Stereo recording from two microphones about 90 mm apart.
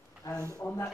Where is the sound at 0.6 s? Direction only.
25° left (ahead or behind).